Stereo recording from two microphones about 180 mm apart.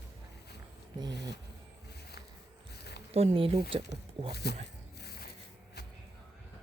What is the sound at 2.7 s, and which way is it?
Insect, 65° left (ahead or behind).